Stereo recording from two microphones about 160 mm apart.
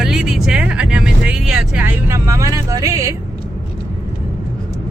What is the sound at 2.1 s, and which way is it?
Speech, 20° right (ahead or behind).